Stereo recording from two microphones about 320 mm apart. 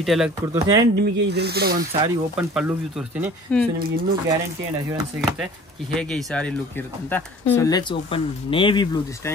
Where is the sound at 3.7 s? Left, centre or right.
Right.